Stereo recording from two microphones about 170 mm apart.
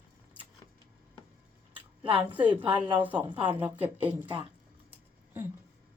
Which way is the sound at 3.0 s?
10° right (ahead or behind).